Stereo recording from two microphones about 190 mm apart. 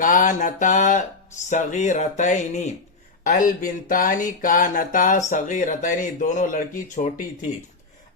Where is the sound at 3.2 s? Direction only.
45° left (ahead or behind).